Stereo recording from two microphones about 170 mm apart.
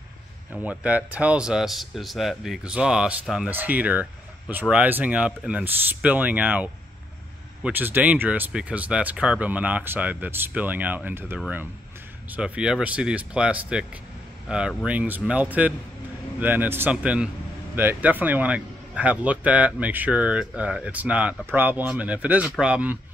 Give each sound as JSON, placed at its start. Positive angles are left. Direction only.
{"t": 0.5, "sound": "speech", "side_deg": -10}